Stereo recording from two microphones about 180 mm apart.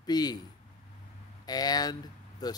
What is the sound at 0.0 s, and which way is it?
Speech, 20° left (ahead or behind).